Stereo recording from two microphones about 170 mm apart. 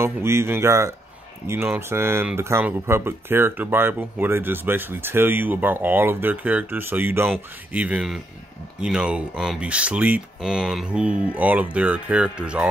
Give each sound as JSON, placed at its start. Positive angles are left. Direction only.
{"t": 0.0, "sound": "speech", "side_deg": -15}